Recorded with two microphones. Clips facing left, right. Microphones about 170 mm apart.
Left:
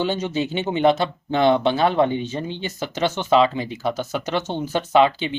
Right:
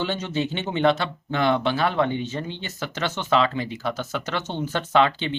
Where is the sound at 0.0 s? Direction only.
15° left (ahead or behind).